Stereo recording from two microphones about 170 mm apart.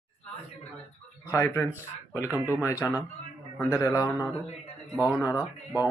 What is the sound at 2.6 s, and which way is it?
Speech, 15° left (ahead or behind).